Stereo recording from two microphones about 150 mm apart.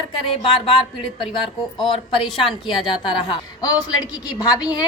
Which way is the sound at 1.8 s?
35° left (ahead or behind).